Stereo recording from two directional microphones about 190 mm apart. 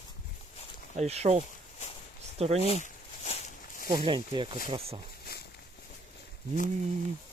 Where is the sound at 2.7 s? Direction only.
35° left (ahead or behind).